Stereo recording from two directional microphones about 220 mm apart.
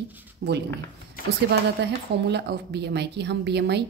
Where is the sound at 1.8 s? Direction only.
50° right (ahead or behind).